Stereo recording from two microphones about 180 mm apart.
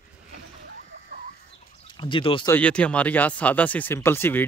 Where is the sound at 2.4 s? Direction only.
10° left (ahead or behind).